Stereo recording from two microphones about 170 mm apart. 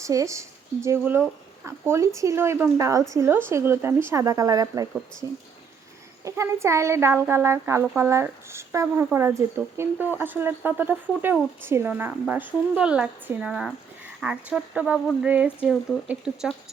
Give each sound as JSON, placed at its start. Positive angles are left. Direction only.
{"t": 0.0, "sound": "speech", "side_deg": -20}